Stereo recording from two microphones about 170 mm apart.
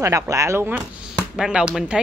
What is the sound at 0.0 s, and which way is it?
A woman's voice, 20° right (ahead or behind).